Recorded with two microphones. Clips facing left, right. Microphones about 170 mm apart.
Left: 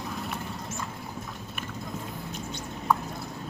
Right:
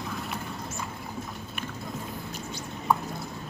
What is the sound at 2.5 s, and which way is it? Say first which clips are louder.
Mouse: even; centre (ahead or behind).